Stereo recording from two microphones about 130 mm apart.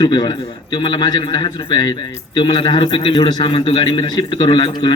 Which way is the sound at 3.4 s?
45° left (ahead or behind).